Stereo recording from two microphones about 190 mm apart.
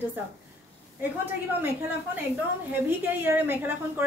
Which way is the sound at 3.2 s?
10° right (ahead or behind).